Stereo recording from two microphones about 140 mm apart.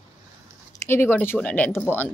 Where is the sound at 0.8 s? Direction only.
15° left (ahead or behind).